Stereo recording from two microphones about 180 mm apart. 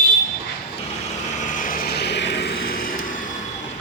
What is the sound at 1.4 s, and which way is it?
Vehicle, 45° left (ahead or behind).